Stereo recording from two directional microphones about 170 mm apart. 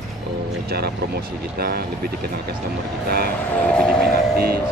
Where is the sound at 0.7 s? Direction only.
65° right (ahead or behind).